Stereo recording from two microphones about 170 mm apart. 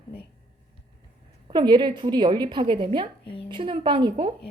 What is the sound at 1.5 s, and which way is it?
A woman's voice, 25° right (ahead or behind).